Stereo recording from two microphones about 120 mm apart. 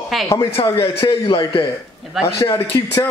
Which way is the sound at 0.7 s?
45° left (ahead or behind).